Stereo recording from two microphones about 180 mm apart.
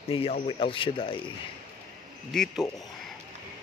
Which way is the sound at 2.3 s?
5° left (ahead or behind).